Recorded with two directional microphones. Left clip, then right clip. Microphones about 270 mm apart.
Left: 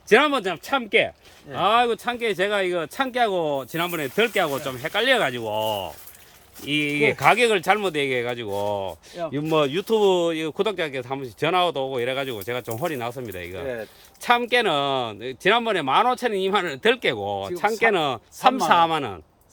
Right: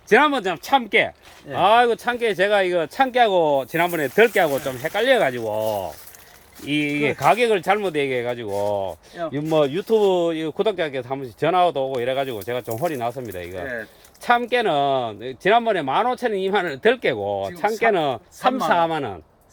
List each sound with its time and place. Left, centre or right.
0.1 s speech: centre